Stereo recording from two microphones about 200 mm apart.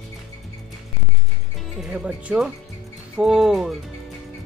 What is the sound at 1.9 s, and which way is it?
Music, 5° right (ahead or behind).